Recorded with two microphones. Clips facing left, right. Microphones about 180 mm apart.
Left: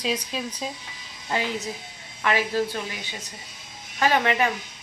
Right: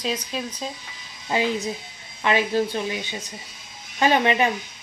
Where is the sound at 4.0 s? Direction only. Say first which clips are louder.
Right 2 dB; 20° right (ahead or behind).